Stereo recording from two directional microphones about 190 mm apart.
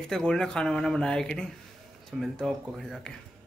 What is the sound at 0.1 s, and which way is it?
Speech, 5° left (ahead or behind).